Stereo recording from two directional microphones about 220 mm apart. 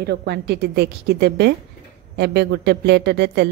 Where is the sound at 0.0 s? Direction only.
50° right (ahead or behind).